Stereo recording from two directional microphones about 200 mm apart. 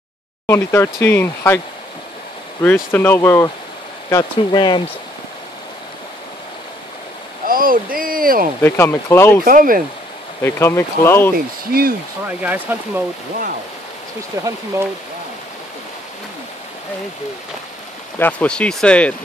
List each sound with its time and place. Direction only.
0.5 s speech: 10° left (ahead or behind)
2.6 s speech: 10° left (ahead or behind)
7.4 s speech: 45° right (ahead or behind)
8.5 s speech: 10° left (ahead or behind)
9.4 s speech: 45° right (ahead or behind)
10.4 s speech: 15° left (ahead or behind)
11.3 s speech: 50° right (ahead or behind)
12.3 s speech: 5° right (ahead or behind)
14.3 s speech: 15° right (ahead or behind)
18.2 s speech: 5° left (ahead or behind)